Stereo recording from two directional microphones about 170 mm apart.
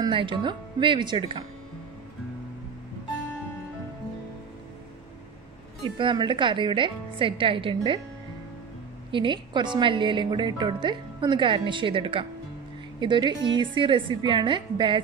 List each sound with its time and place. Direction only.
0.0 s speech: 30° right (ahead or behind)
5.9 s speech: 30° right (ahead or behind)
9.1 s speech: 30° right (ahead or behind)